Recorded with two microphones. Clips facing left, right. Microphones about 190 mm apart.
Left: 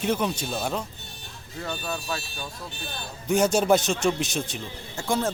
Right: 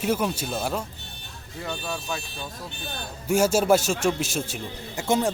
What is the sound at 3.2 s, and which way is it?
Speech, 5° right (ahead or behind).